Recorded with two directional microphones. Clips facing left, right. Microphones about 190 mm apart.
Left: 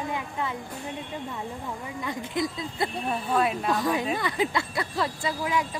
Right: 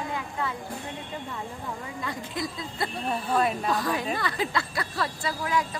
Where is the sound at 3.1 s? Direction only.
Centre (ahead or behind).